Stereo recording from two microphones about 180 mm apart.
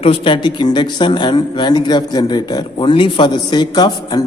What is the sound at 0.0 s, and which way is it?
Speech, 30° left (ahead or behind).